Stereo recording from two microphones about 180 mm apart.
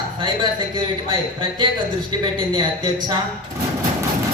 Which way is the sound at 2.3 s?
25° right (ahead or behind).